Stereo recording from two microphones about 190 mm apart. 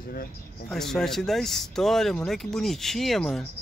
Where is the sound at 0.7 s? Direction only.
Centre (ahead or behind).